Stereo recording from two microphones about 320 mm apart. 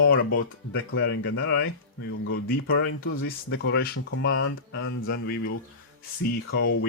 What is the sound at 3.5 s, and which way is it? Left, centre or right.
Speech, left.